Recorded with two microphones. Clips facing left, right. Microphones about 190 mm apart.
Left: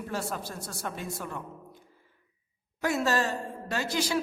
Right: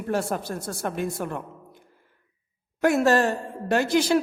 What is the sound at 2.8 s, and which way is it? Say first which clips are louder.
Speech: right 8 dB; 55° right (ahead or behind).